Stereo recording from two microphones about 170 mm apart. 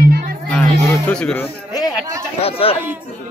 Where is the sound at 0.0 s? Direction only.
65° right (ahead or behind).